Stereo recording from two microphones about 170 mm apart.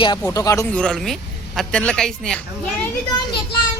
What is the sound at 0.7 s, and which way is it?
Speech, 5° left (ahead or behind).